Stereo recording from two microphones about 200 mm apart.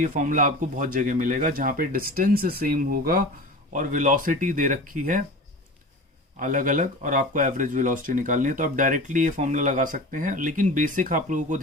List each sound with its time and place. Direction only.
0.0 s speech: 40° right (ahead or behind)
6.4 s speech: 40° right (ahead or behind)